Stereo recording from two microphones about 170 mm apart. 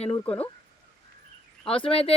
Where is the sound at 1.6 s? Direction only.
30° left (ahead or behind).